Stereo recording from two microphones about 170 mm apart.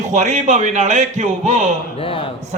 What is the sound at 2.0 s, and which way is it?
Speech, 30° left (ahead or behind).